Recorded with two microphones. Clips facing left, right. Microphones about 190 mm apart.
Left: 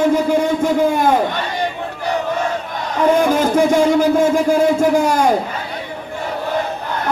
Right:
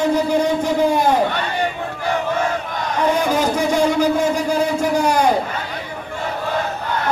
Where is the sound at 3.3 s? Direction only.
50° left (ahead or behind).